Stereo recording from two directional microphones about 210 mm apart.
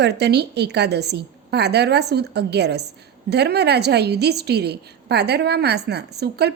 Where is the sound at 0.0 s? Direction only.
50° right (ahead or behind).